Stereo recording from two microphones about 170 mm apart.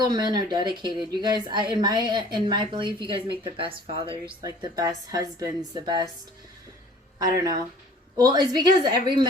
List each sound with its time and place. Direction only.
0.0 s speech: 25° right (ahead or behind)
8.1 s speech: 25° right (ahead or behind)